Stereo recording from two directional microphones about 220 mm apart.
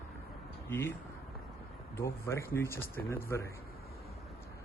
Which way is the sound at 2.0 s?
10° left (ahead or behind).